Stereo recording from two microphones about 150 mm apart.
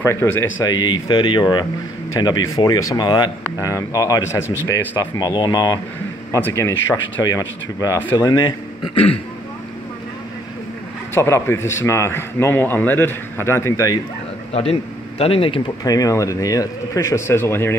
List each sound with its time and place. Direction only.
0.0 s a man's voice: 15° left (ahead or behind)
0.7 s a man's voice: 30° left (ahead or behind)
8.5 s a man's voice: 40° left (ahead or behind)
11.1 s a man's voice: 20° left (ahead or behind)
14.5 s a man's voice: 40° left (ahead or behind)
15.8 s speech: 25° left (ahead or behind)